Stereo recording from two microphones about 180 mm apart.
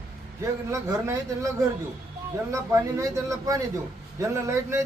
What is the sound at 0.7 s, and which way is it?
Speech, 15° right (ahead or behind).